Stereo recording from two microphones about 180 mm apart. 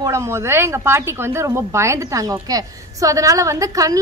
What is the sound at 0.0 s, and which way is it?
A woman's voice, 15° right (ahead or behind).